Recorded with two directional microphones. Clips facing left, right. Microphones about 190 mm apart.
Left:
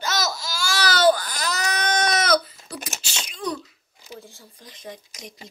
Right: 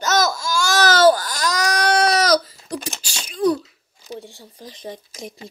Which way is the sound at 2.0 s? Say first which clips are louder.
Right 4 dB; 35° right (ahead or behind).